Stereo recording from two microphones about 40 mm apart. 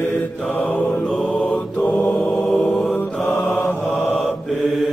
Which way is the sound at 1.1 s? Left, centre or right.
Left.